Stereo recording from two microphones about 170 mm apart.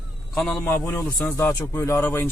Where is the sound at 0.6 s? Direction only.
15° left (ahead or behind).